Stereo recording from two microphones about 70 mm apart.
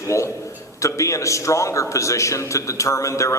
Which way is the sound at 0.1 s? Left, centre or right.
Left.